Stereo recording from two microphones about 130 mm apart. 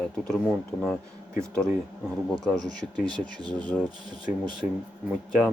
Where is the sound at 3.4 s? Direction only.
35° right (ahead or behind).